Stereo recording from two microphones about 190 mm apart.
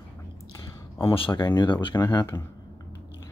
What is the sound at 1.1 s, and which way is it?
Speech, 25° left (ahead or behind).